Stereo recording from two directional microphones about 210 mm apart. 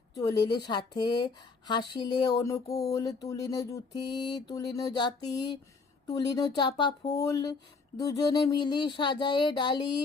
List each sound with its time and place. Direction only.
0.1 s speech: 20° left (ahead or behind)